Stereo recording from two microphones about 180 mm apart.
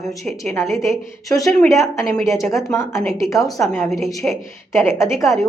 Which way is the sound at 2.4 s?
5° left (ahead or behind).